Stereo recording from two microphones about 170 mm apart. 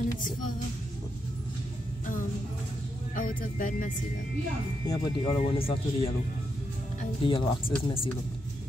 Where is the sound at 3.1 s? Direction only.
50° left (ahead or behind).